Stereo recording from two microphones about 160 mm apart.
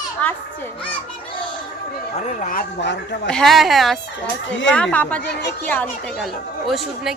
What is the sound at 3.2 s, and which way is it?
Speech, 5° left (ahead or behind).